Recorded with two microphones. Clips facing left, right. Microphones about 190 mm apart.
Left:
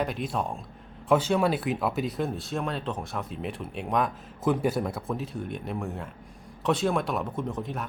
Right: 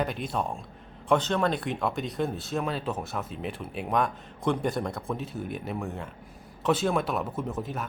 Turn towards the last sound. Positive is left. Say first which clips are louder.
# even
turn(degrees=0)  # may be behind; listen again after turning